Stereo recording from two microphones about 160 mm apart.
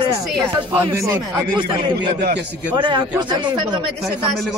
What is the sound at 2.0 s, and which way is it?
Speech, 90° right.